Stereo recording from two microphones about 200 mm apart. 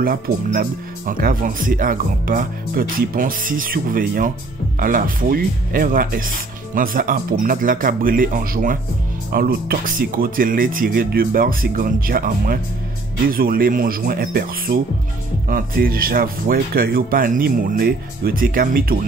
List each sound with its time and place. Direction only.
0.0 s speech: 45° right (ahead or behind)